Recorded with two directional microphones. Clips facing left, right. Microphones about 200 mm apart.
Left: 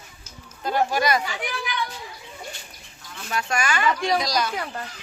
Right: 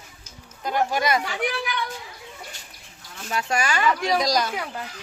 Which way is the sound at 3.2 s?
30° right (ahead or behind).